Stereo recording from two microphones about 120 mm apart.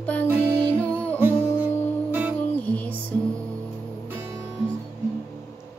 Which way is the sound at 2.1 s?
15° right (ahead or behind).